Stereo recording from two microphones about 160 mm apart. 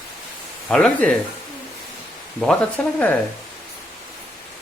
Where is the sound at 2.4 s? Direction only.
10° left (ahead or behind).